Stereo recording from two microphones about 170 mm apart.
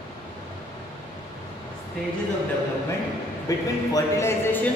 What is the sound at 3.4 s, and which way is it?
Speech, 20° left (ahead or behind).